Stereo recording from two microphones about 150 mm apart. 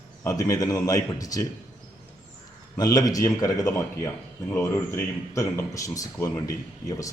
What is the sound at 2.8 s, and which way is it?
Speech, 25° left (ahead or behind).